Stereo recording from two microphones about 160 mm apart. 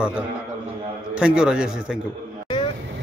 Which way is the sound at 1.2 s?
5° right (ahead or behind).